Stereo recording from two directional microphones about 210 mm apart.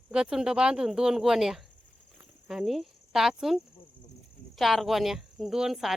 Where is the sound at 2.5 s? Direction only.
Centre (ahead or behind).